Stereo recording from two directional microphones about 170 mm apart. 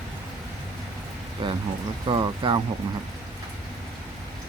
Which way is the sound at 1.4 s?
25° right (ahead or behind).